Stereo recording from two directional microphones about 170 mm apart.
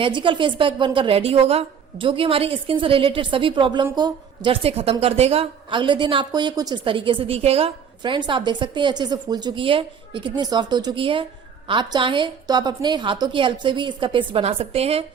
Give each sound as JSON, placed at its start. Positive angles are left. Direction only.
{"t": 0.0, "sound": "a woman's voice", "side_deg": -30}